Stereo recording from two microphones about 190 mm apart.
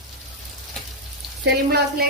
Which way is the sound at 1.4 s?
55° right (ahead or behind).